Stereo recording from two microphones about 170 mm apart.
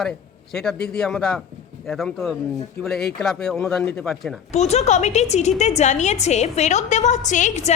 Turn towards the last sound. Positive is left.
turn(degrees=45)  # may be behind; listen again after turning